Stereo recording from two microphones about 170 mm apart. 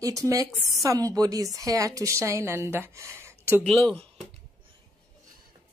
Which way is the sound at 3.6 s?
5° left (ahead or behind).